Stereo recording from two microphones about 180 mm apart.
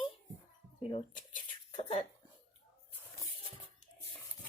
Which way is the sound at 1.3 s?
40° left (ahead or behind).